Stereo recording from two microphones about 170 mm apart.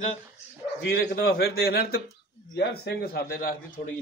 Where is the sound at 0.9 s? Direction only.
65° left (ahead or behind).